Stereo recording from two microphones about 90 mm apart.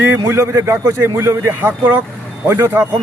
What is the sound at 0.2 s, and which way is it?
A man's voice, 30° right (ahead or behind).